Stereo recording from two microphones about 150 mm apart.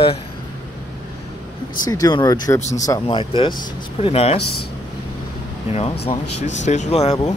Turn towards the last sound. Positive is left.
turn(degrees=45)  # may be behind; listen again after turning